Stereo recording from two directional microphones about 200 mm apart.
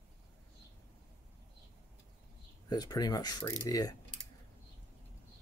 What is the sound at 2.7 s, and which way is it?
Speech, 20° left (ahead or behind).